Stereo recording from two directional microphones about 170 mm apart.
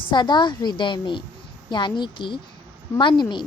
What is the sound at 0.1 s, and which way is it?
A woman's voice, 25° left (ahead or behind).